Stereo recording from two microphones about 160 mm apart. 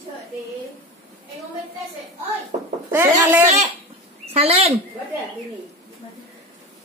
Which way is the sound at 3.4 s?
45° right (ahead or behind).